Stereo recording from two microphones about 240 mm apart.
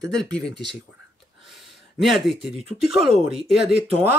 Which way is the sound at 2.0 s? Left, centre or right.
Centre.